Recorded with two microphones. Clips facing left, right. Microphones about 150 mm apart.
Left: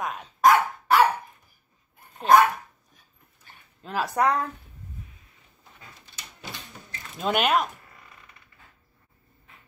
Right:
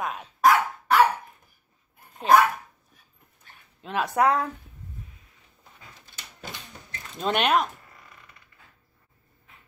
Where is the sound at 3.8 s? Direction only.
Centre (ahead or behind).